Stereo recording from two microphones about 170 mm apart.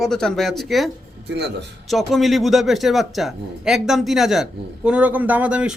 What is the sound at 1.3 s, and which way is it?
Speech, 85° right.